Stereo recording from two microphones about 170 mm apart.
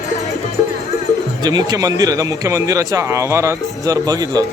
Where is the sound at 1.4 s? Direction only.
25° right (ahead or behind).